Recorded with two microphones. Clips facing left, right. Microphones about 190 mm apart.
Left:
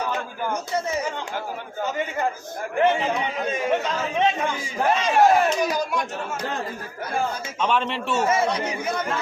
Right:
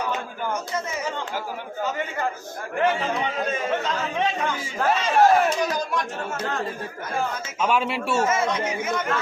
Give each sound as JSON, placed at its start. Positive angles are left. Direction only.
{"t": 2.8, "sound": "speech", "side_deg": 20}
{"t": 4.9, "sound": "speech", "side_deg": 0}
{"t": 5.6, "sound": "speech", "side_deg": 10}
{"t": 7.6, "sound": "speech", "side_deg": -5}
{"t": 8.3, "sound": "speech", "side_deg": 35}